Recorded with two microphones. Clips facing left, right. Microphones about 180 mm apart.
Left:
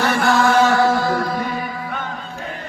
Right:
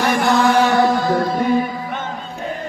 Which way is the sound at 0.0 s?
15° right (ahead or behind).